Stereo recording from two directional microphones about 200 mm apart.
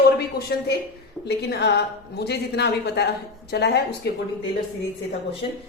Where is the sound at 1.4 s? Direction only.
55° left (ahead or behind).